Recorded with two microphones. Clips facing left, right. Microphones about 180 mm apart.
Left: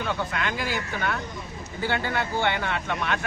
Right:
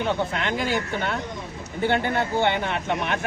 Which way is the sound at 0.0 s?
25° right (ahead or behind).